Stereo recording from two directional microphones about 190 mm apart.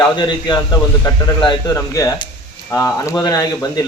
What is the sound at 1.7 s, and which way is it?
Speech, 15° left (ahead or behind).